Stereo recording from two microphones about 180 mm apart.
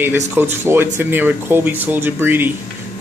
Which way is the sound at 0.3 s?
10° right (ahead or behind).